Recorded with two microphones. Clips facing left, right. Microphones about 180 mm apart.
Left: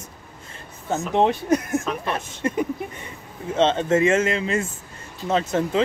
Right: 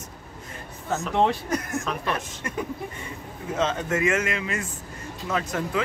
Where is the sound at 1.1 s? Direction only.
20° left (ahead or behind).